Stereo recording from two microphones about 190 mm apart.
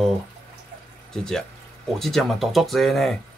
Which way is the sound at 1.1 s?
5° left (ahead or behind).